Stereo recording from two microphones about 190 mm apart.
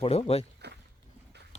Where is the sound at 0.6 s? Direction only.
60° right (ahead or behind).